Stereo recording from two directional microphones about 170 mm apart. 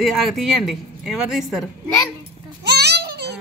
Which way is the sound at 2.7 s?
75° right (ahead or behind).